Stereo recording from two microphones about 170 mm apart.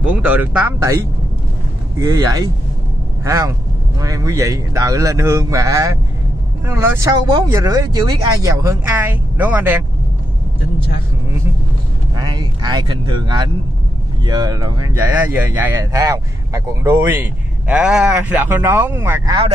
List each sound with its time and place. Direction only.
0.0 s speech: 10° right (ahead or behind)
2.0 s a man's voice: 20° right (ahead or behind)
12.2 s a man's voice: 25° right (ahead or behind)
15.0 s speech: 10° right (ahead or behind)